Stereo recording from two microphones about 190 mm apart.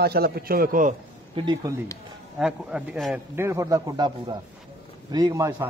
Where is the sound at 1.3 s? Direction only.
25° right (ahead or behind).